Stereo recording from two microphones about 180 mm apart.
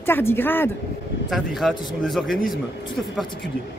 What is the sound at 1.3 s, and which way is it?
Speech, centre (ahead or behind).